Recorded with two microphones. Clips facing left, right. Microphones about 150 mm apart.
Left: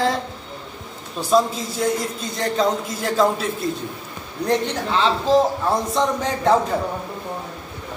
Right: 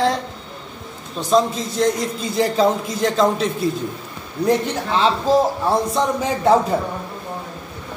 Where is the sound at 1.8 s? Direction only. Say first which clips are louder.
Right 3 dB; 5° left (ahead or behind).